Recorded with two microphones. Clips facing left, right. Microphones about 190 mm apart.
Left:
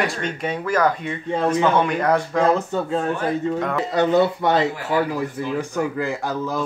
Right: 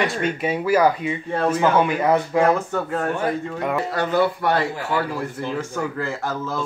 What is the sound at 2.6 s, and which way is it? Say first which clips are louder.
Speech: left 1 dB; 20° left (ahead or behind).